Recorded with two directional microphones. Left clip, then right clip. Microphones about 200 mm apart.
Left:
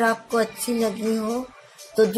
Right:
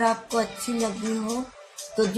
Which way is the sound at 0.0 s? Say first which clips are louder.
Left 2 dB; 40° left (ahead or behind).